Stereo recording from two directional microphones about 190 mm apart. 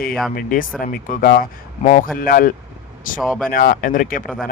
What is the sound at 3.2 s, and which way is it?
Speech, centre (ahead or behind).